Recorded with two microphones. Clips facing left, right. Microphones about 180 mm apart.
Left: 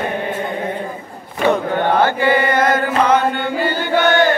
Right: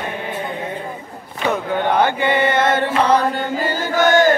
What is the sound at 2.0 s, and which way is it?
Chant, 20° right (ahead or behind).